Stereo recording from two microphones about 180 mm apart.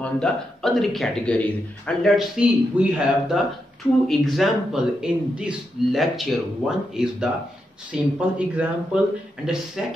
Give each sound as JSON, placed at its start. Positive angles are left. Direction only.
{"t": 0.0, "sound": "speech", "side_deg": 5}